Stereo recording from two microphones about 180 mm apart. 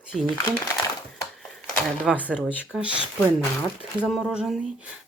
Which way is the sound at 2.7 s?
5° right (ahead or behind).